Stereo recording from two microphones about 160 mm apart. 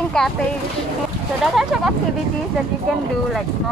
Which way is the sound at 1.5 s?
Centre (ahead or behind).